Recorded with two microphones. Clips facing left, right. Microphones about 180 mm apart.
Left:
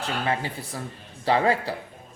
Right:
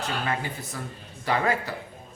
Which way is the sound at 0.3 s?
30° left (ahead or behind).